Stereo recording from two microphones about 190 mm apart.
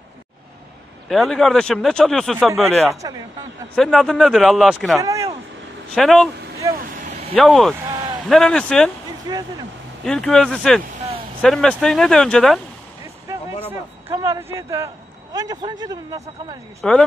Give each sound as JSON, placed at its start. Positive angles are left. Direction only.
{"t": 1.0, "sound": "speech", "side_deg": 0}
{"t": 2.9, "sound": "speech", "side_deg": -15}
{"t": 3.7, "sound": "speech", "side_deg": 5}
{"t": 5.0, "sound": "speech", "side_deg": -15}
{"t": 5.9, "sound": "speech", "side_deg": 0}
{"t": 6.7, "sound": "speech", "side_deg": -50}
{"t": 7.3, "sound": "speech", "side_deg": 0}
{"t": 9.3, "sound": "a man's voice", "side_deg": -25}
{"t": 10.0, "sound": "speech", "side_deg": 5}
{"t": 13.0, "sound": "a sound", "side_deg": -15}
{"t": 15.3, "sound": "a man's voice", "side_deg": -20}
{"t": 16.8, "sound": "speech", "side_deg": 5}